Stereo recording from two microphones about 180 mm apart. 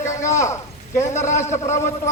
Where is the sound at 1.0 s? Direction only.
40° left (ahead or behind).